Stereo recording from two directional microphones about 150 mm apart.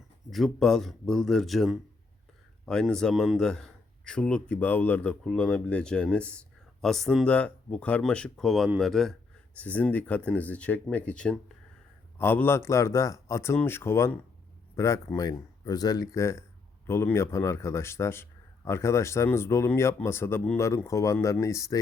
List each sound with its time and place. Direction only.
0.3 s speech: centre (ahead or behind); by 21.8 s 20° left (ahead or behind)